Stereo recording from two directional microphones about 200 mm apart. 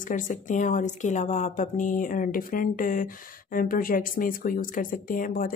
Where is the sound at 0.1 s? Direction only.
40° left (ahead or behind).